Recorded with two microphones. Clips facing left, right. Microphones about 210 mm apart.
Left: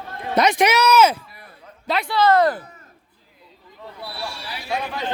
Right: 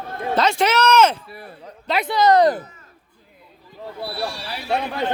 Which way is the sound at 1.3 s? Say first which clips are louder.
Right 9 dB; 30° right (ahead or behind).